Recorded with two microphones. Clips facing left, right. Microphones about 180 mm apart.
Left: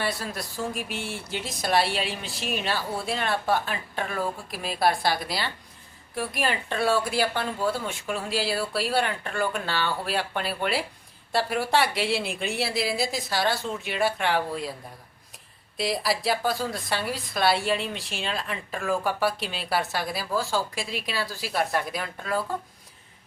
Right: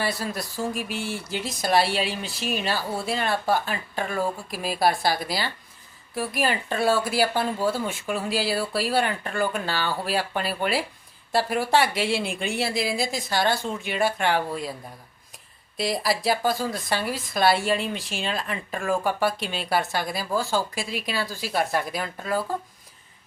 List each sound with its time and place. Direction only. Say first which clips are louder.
0.0 s a woman's voice: right 2 dB; centre (ahead or behind)
15.8 s a woman's voice: right 1 dB; centre (ahead or behind)